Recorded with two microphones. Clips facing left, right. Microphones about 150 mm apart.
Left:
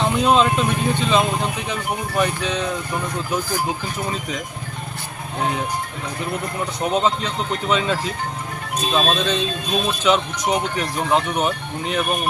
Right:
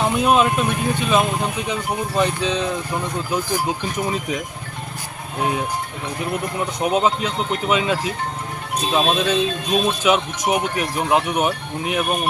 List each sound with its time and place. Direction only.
0.0 s speech: 15° right (ahead or behind)
3.9 s speech: 10° right (ahead or behind)
6.8 s speech: 10° right (ahead or behind)